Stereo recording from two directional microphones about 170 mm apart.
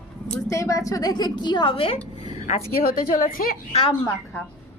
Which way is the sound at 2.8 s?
60° left (ahead or behind).